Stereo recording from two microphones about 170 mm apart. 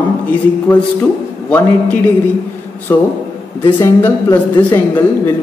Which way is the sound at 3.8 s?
15° left (ahead or behind).